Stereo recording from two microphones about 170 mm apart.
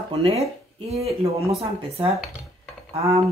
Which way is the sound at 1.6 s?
35° right (ahead or behind).